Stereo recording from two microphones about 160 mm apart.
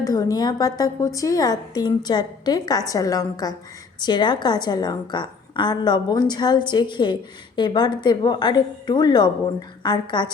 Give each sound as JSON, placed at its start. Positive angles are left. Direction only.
{"t": 0.0, "sound": "a woman's voice", "side_deg": 20}